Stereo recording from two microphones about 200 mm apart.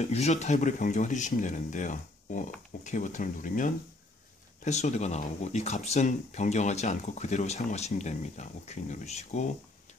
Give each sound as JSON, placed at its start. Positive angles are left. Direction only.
{"t": 0.0, "sound": "speech", "side_deg": 35}